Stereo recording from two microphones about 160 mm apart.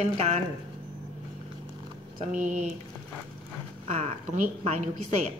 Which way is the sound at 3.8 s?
40° right (ahead or behind).